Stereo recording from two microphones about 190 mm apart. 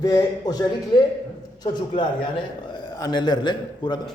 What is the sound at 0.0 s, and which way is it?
A man's voice, 20° left (ahead or behind).